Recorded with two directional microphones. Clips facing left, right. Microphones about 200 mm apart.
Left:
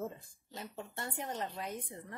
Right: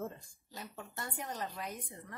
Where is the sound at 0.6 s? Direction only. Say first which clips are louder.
Left 2 dB; 25° left (ahead or behind).